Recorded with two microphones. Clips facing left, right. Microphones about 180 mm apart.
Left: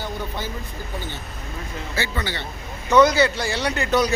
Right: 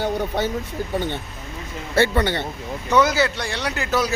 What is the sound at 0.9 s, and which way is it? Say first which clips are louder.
A man's voice: right 8 dB; 65° right (ahead or behind).